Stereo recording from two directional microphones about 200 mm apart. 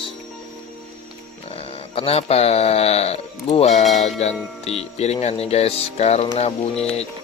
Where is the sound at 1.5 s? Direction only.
30° left (ahead or behind).